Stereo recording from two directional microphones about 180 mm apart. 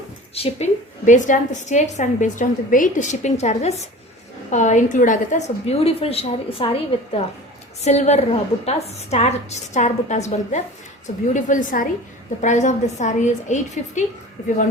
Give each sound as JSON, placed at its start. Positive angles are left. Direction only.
{"t": 0.3, "sound": "a woman's voice", "side_deg": 35}
{"t": 7.9, "sound": "a woman's voice", "side_deg": 40}